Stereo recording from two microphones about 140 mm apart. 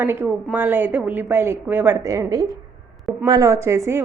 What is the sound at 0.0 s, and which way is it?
A woman's voice, 15° right (ahead or behind).